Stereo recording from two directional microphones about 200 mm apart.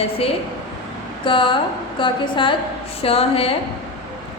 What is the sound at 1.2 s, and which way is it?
A woman's voice, 25° left (ahead or behind).